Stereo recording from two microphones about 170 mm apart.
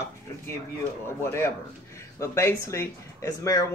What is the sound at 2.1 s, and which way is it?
Speech, 15° left (ahead or behind).